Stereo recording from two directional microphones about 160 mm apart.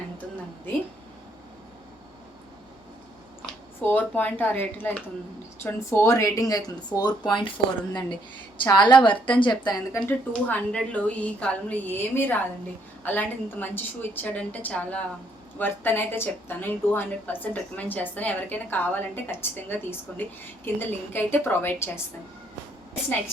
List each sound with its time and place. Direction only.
3.4 s speech: 10° left (ahead or behind); by 7.5 s 30° left (ahead or behind)
8.6 s speech: 30° left (ahead or behind)
10.1 s a woman's voice: 10° left (ahead or behind)